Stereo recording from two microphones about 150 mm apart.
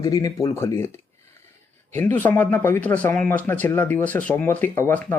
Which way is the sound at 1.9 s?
15° left (ahead or behind).